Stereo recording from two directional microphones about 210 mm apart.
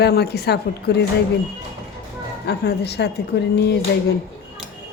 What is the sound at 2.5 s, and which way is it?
Speech, 50° left (ahead or behind).